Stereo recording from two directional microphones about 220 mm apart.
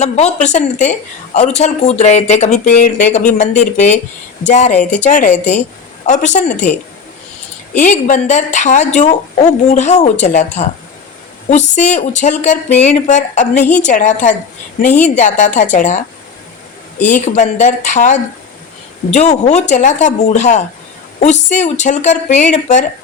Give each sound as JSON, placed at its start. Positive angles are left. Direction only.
{"t": 0.0, "sound": "a woman's voice", "side_deg": 30}
{"t": 4.7, "sound": "speech", "side_deg": 5}
{"t": 4.9, "sound": "a woman's voice", "side_deg": 35}
{"t": 7.8, "sound": "a woman's voice", "side_deg": 35}
{"t": 17.1, "sound": "a woman's voice", "side_deg": 35}